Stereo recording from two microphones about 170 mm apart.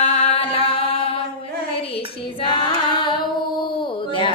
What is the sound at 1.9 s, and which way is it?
Child singing, 35° left (ahead or behind).